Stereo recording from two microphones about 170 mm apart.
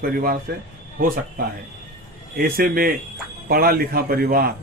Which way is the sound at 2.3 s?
60° right (ahead or behind).